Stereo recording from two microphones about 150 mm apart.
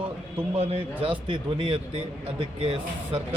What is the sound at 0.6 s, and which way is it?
Speech, 40° right (ahead or behind).